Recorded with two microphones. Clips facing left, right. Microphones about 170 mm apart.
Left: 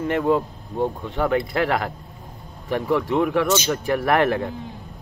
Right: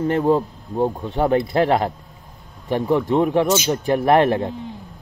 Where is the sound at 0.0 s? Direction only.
35° right (ahead or behind).